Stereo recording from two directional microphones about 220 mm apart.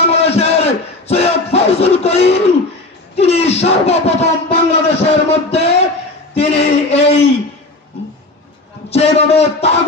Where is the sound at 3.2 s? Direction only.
30° left (ahead or behind).